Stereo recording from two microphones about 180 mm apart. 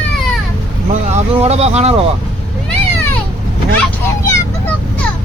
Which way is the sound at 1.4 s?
35° right (ahead or behind).